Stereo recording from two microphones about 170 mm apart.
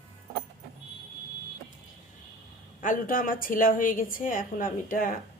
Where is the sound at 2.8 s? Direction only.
55° left (ahead or behind).